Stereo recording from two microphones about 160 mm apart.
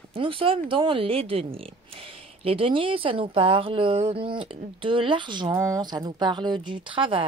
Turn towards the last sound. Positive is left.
turn(degrees=-30)  # may be behind; listen again after turning